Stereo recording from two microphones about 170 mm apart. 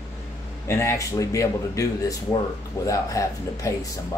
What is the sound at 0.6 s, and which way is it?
Speech, 15° left (ahead or behind).